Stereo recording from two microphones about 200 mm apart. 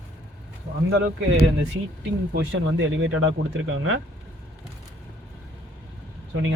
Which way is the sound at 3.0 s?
75° right (ahead or behind).